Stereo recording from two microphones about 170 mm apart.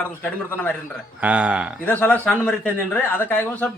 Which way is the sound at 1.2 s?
10° right (ahead or behind).